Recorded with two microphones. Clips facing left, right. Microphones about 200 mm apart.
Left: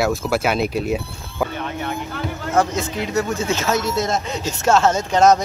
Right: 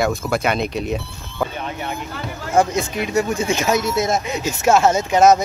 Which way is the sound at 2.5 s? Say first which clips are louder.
Right 2 dB; 15° right (ahead or behind).